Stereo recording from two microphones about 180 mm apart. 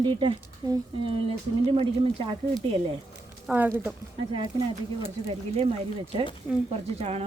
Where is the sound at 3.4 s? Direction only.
10° right (ahead or behind).